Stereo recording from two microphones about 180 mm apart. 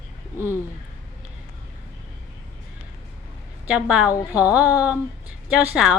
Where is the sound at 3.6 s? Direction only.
5° right (ahead or behind).